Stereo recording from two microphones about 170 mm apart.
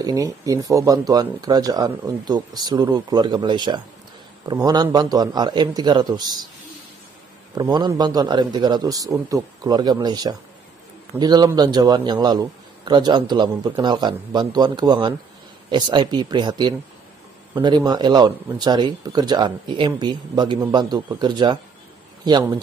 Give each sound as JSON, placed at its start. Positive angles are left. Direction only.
{"t": 0.0, "sound": "a man's voice", "side_deg": -20}
{"t": 7.5, "sound": "a man's voice", "side_deg": -25}